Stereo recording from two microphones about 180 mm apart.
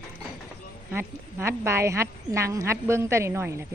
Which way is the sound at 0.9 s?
15° right (ahead or behind).